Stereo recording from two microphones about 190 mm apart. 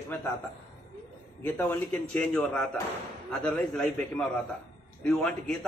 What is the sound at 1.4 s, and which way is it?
A man's voice, 10° left (ahead or behind).